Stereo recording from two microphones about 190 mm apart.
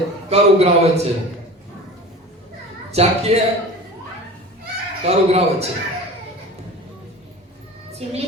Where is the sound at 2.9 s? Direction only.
35° right (ahead or behind).